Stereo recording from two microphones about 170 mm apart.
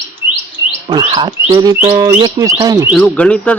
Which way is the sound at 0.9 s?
30° right (ahead or behind).